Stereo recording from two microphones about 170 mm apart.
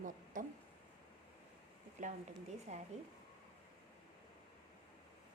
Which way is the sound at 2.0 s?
45° right (ahead or behind).